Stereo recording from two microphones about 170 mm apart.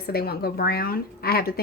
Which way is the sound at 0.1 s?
65° left (ahead or behind).